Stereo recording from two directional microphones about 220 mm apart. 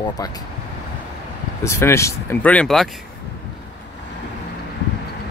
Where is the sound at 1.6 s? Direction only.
10° left (ahead or behind).